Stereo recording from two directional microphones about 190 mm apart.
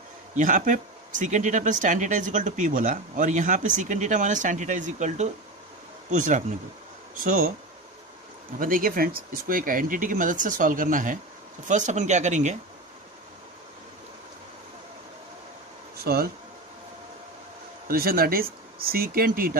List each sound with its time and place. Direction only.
0.3 s speech: 45° right (ahead or behind)
8.5 s speech: 45° right (ahead or behind)
16.0 s speech: 55° right (ahead or behind)
17.8 s speech: 50° right (ahead or behind)